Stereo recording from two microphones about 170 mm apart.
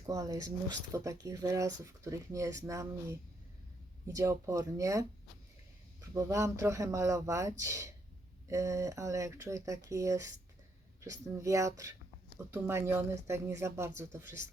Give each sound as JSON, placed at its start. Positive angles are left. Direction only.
{"t": 0.0, "sound": "speech", "side_deg": -20}